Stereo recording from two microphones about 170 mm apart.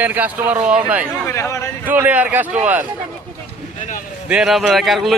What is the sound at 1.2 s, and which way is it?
Speech, 15° left (ahead or behind).